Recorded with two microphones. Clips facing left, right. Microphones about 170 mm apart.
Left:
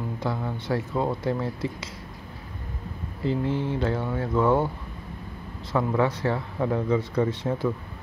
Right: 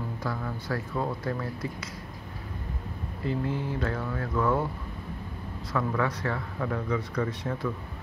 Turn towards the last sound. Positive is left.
turn(degrees=30)  # may be behind; listen again after turning